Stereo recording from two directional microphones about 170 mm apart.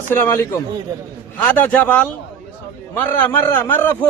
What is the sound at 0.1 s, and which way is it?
A man's voice, 10° left (ahead or behind).